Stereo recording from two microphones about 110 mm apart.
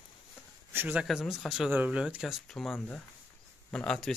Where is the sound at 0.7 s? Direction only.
15° right (ahead or behind).